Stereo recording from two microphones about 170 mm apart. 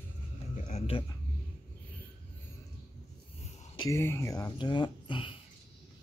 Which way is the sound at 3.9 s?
15° left (ahead or behind).